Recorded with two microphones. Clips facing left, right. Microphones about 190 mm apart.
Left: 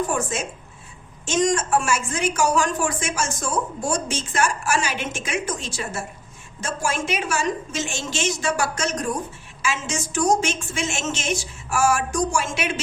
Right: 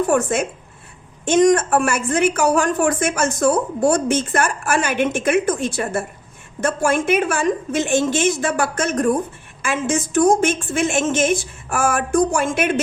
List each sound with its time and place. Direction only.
0.0 s a woman's voice: 65° right (ahead or behind)